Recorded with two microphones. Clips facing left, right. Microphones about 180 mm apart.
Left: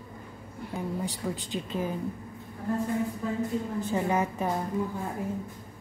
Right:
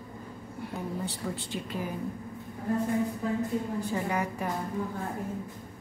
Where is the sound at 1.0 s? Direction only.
15° left (ahead or behind).